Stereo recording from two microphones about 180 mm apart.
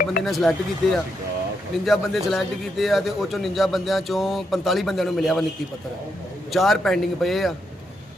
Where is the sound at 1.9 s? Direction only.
Centre (ahead or behind).